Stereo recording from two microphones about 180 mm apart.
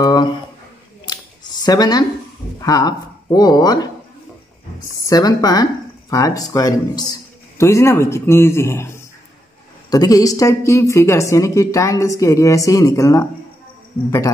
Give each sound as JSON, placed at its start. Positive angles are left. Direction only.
{"t": 0.0, "sound": "a sound", "side_deg": 25}
{"t": 1.0, "sound": "scissors", "side_deg": 20}
{"t": 2.6, "sound": "speech", "side_deg": 20}
{"t": 5.0, "sound": "a woman's voice", "side_deg": 20}